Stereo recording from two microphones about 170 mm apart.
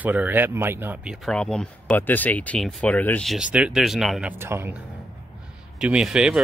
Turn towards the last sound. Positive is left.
turn(degrees=-5)  # may be behind; listen again after turning